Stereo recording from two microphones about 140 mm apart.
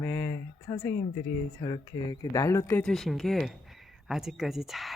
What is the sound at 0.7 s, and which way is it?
Speech, 30° left (ahead or behind).